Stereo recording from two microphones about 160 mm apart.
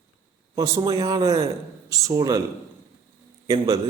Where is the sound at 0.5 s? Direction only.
20° right (ahead or behind).